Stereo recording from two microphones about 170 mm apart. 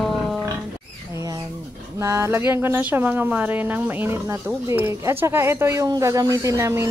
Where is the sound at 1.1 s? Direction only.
20° right (ahead or behind).